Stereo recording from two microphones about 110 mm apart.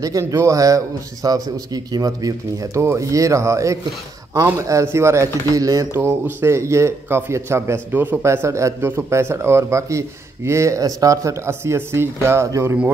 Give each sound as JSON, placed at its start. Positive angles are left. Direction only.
{"t": 0.0, "sound": "speech", "side_deg": -30}
{"t": 5.9, "sound": "speech", "side_deg": -20}